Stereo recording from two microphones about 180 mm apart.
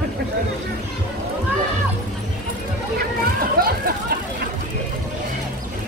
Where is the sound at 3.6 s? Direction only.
55° right (ahead or behind).